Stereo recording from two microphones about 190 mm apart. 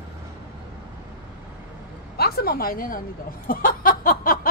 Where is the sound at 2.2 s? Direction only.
55° left (ahead or behind).